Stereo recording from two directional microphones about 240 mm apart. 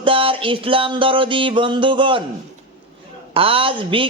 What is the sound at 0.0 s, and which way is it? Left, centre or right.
Music, right.